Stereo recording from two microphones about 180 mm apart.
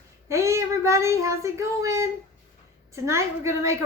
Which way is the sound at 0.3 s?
15° right (ahead or behind).